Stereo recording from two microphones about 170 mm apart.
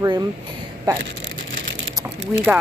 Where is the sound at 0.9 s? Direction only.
20° right (ahead or behind).